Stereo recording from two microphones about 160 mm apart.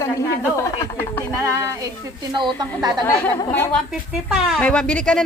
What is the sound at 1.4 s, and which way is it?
A woman's voice, 20° right (ahead or behind).